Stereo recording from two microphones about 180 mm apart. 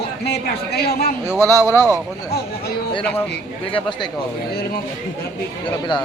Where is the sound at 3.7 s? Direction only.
25° left (ahead or behind).